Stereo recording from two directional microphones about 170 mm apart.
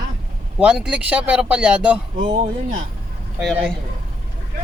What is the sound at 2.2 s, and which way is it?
Speech, 40° right (ahead or behind).